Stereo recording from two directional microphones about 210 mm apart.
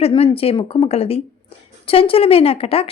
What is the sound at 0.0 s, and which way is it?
A woman's voice, 25° left (ahead or behind).